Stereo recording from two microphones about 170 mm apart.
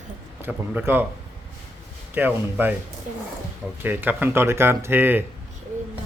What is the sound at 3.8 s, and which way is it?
Speech, 10° right (ahead or behind).